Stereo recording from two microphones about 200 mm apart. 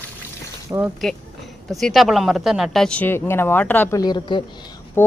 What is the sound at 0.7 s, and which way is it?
Speech, 10° right (ahead or behind).